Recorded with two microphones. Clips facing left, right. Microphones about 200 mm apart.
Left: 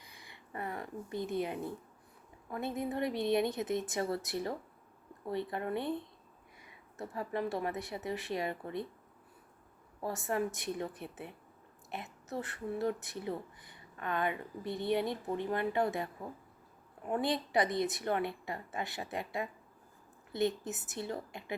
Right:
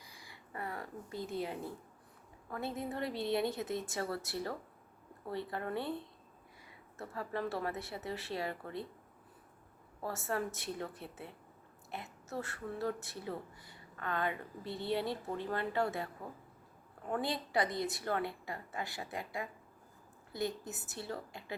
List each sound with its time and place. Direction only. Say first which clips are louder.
0.0 s a sound: even; 25° left (ahead or behind)
2.5 s a woman's voice: left 3 dB; 20° left (ahead or behind)
7.0 s speech: left 2 dB; 15° left (ahead or behind)
10.0 s speech: left 3 dB; 15° left (ahead or behind)
17.1 s a woman's voice: left 3 dB; 20° left (ahead or behind)